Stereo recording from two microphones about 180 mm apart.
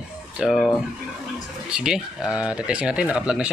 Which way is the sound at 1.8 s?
5° right (ahead or behind).